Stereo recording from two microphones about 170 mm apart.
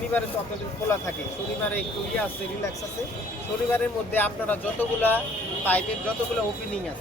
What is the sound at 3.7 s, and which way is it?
Speech, 10° left (ahead or behind).